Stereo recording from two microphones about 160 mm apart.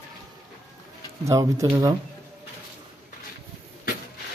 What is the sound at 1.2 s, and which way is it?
Speech, 20° right (ahead or behind).